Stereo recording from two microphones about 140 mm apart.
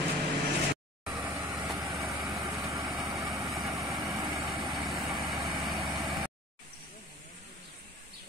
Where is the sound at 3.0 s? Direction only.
25° right (ahead or behind).